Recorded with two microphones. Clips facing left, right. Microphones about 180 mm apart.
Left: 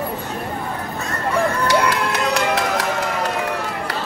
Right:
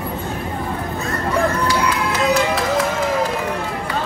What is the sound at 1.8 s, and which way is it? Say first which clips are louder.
Run: even; 65° left (ahead or behind).